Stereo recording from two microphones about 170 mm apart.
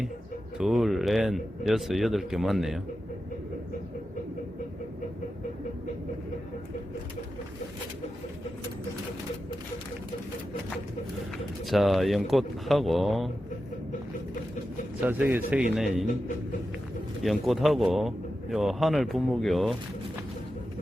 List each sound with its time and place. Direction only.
0.6 s speech: centre (ahead or behind)
11.6 s speech: centre (ahead or behind)
15.0 s speech: 10° right (ahead or behind)
17.2 s speech: centre (ahead or behind)